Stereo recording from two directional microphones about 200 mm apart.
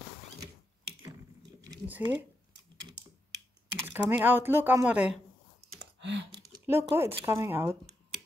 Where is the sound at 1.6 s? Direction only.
15° right (ahead or behind).